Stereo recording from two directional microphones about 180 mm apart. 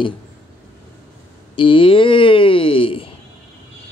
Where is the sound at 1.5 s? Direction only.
30° left (ahead or behind).